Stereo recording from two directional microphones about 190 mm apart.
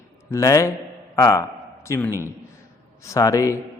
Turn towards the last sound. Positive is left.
turn(degrees=15)  # may be behind; listen again after turning